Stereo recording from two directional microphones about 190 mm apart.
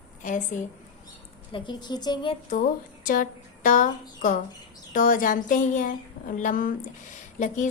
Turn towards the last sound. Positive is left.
turn(degrees=40)  # may be behind; listen again after turning